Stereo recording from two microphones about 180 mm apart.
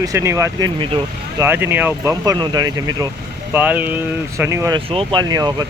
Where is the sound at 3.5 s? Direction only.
10° right (ahead or behind).